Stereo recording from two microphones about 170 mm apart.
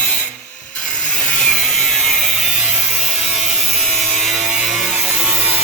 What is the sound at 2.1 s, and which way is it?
Ratchet, centre (ahead or behind).